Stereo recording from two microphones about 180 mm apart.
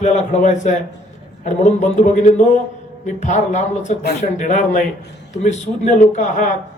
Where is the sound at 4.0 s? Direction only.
60° left (ahead or behind).